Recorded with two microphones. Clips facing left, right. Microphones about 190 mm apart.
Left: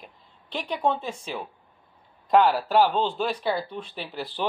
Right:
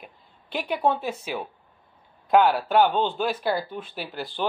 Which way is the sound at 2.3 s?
Centre (ahead or behind).